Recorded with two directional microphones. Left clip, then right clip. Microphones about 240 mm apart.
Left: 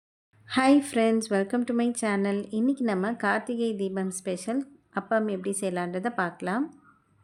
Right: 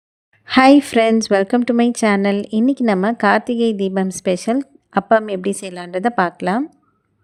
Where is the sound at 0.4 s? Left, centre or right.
Right.